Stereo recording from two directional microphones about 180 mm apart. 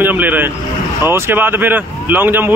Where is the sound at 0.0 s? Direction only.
10° right (ahead or behind).